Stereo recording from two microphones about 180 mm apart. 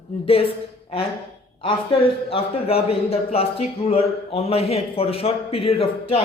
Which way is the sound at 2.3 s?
30° left (ahead or behind).